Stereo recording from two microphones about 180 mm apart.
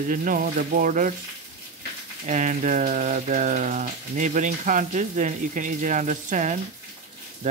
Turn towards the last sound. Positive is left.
turn(degrees=-45)  # may be behind; listen again after turning